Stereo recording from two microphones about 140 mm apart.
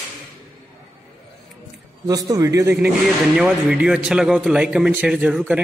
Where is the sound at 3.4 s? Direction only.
5° right (ahead or behind).